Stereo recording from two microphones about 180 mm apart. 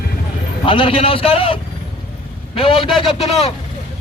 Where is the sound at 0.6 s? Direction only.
30° left (ahead or behind).